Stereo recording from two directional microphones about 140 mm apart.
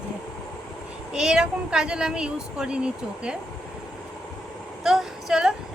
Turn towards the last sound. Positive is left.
turn(degrees=-5)  # may be behind; listen again after turning